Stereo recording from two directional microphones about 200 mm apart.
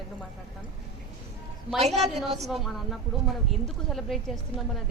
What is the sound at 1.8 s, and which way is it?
Speech, 30° right (ahead or behind).